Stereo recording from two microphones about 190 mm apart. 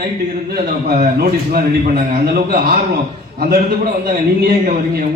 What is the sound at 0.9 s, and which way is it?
Speech, 50° right (ahead or behind).